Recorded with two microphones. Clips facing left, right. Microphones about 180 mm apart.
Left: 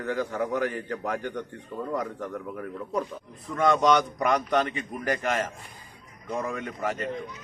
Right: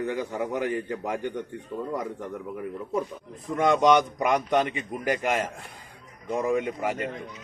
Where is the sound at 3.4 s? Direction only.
15° right (ahead or behind).